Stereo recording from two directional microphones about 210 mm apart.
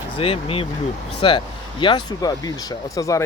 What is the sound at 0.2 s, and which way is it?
Speech, 25° left (ahead or behind).